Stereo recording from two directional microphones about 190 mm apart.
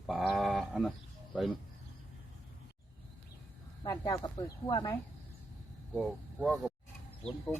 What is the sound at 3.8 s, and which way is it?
Speech, 20° left (ahead or behind).